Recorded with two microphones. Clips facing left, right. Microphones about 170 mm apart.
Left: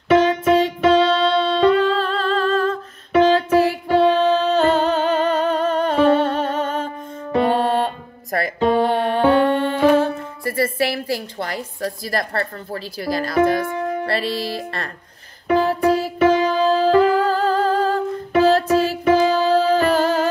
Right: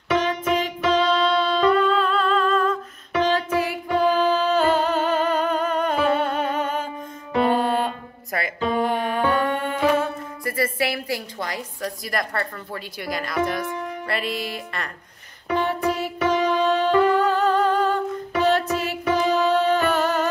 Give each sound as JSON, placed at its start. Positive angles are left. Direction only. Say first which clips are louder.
{"t": 0.2, "sound": "music", "louder": "left 7 dB", "side_deg": 30}